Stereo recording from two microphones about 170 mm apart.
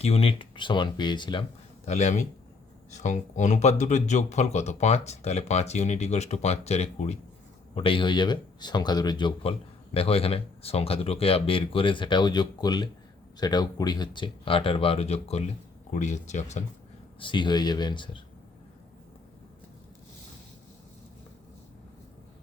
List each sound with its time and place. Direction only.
0.0 s speech: 35° left (ahead or behind)
1.8 s speech: 40° left (ahead or behind)
17.2 s speech: 30° left (ahead or behind)